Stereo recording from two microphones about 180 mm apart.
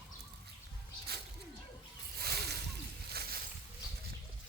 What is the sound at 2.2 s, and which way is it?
Splash, 60° right (ahead or behind).